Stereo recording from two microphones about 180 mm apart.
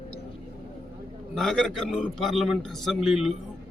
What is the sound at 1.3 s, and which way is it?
A man's voice, 5° left (ahead or behind).